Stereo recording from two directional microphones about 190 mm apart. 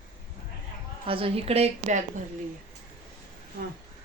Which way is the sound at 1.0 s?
30° right (ahead or behind).